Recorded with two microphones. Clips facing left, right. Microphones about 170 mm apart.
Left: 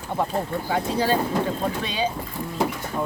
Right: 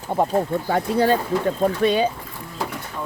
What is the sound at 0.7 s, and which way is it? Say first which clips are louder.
Speech: right 3 dB; 55° right (ahead or behind).